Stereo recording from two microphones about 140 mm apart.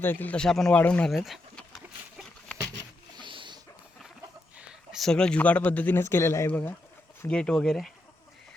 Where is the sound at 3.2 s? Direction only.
35° right (ahead or behind).